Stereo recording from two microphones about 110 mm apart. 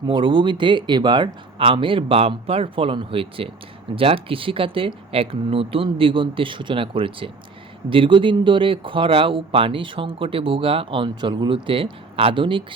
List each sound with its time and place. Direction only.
0.1 s speech: 45° right (ahead or behind)